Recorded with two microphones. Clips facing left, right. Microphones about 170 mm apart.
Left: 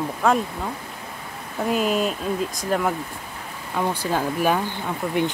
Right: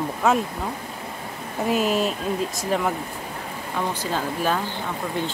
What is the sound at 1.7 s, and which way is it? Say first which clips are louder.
Speech: even; centre (ahead or behind).